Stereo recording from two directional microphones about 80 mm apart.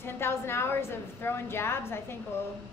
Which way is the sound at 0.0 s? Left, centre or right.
Left.